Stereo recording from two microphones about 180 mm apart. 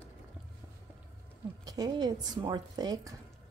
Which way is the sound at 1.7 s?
20° right (ahead or behind).